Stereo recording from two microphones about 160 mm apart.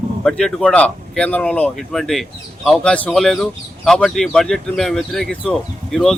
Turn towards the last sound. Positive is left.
turn(degrees=5)  # may be behind; listen again after turning